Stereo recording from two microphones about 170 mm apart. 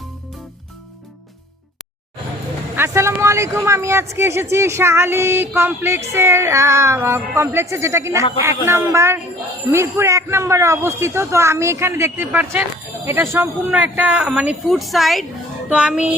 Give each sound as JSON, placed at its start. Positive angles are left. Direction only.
{"t": 2.7, "sound": "a child's voice", "side_deg": -15}